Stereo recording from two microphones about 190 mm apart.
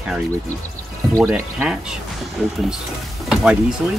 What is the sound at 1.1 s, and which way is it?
Speech, 5° right (ahead or behind).